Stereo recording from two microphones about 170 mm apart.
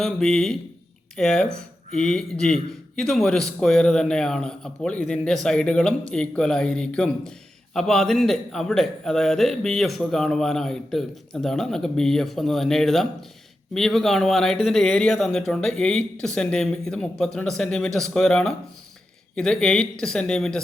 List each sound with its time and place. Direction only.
0.0 s a man's voice: centre (ahead or behind)